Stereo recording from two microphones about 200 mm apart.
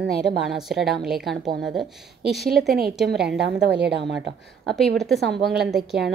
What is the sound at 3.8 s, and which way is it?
Speech, 60° right (ahead or behind).